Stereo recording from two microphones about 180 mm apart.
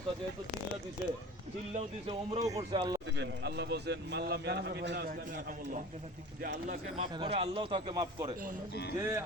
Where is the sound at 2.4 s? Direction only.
20° right (ahead or behind).